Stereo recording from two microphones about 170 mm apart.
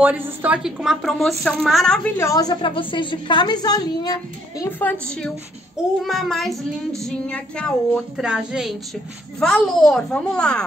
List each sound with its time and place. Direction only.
0.0 s a woman's voice: 10° right (ahead or behind)
2.1 s a woman's voice: 20° left (ahead or behind)
4.6 s a woman's voice: 10° left (ahead or behind)
6.0 s a woman's voice: centre (ahead or behind)